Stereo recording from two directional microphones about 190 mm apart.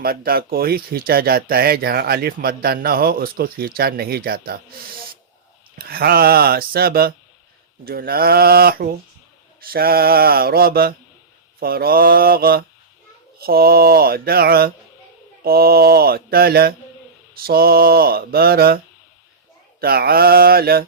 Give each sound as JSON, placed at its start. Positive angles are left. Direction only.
{"t": 0.0, "sound": "speech", "side_deg": -50}
{"t": 19.8, "sound": "speech", "side_deg": -55}